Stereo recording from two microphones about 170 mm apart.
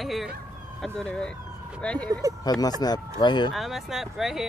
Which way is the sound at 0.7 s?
5° left (ahead or behind).